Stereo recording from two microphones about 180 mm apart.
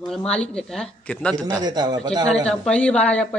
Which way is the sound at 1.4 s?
20° right (ahead or behind).